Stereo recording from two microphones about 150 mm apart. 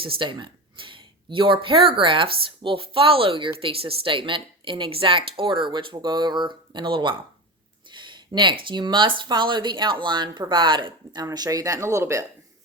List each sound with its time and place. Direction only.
0.0 s speech: 35° right (ahead or behind)
7.9 s a sound: 30° right (ahead or behind)
8.6 s speech: 30° right (ahead or behind)